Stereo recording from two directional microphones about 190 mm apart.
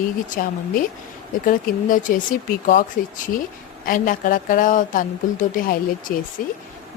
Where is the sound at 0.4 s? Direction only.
50° left (ahead or behind).